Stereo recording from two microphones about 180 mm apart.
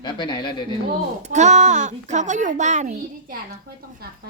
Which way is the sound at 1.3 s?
40° right (ahead or behind).